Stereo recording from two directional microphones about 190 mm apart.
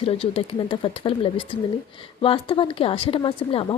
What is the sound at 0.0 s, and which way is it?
Speech, 30° left (ahead or behind).